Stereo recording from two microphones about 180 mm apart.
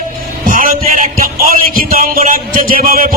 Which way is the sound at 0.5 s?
50° right (ahead or behind).